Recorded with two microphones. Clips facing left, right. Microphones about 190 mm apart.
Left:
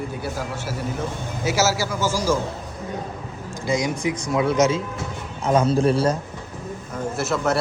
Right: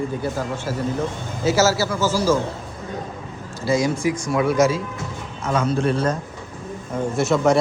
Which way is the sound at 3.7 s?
15° left (ahead or behind).